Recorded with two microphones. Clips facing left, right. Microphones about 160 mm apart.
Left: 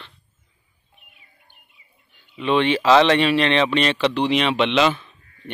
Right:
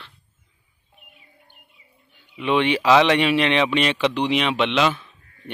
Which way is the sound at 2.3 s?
15° right (ahead or behind).